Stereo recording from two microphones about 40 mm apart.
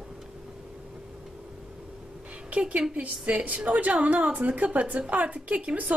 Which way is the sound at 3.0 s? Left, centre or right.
Right.